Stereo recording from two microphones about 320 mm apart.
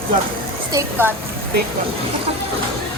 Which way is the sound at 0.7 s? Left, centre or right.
Centre.